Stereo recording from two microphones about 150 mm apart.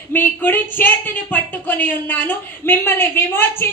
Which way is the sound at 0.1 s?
15° left (ahead or behind).